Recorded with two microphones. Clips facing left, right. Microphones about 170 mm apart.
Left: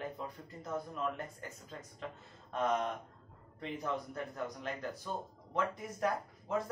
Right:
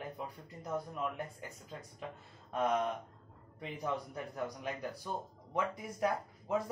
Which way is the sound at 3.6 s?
15° right (ahead or behind).